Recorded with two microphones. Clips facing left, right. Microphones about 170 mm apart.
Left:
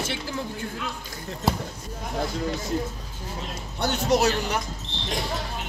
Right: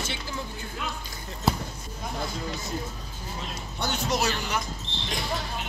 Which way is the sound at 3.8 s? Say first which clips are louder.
Left 6 dB; 60° left (ahead or behind).